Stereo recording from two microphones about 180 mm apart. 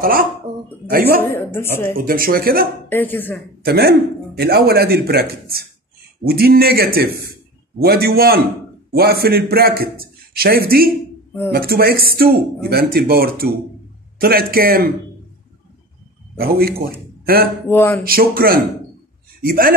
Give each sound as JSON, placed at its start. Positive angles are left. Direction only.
{"t": 0.0, "sound": "a man's voice", "side_deg": -50}
{"t": 1.2, "sound": "a woman's voice", "side_deg": 10}
{"t": 2.0, "sound": "speech", "side_deg": -55}
{"t": 2.9, "sound": "a woman's voice", "side_deg": 10}
{"t": 3.6, "sound": "a man's voice", "side_deg": -60}
{"t": 16.3, "sound": "a man's voice", "side_deg": -60}
{"t": 17.6, "sound": "a woman's voice", "side_deg": 10}
{"t": 18.0, "sound": "a man's voice", "side_deg": -55}